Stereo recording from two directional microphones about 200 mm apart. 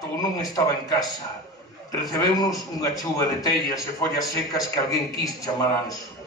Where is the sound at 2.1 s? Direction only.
20° left (ahead or behind).